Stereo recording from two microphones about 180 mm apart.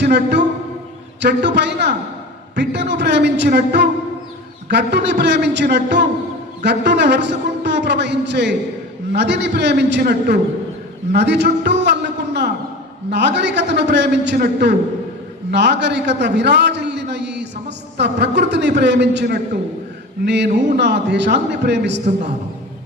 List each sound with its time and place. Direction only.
0.0 s a man's voice: 65° right (ahead or behind)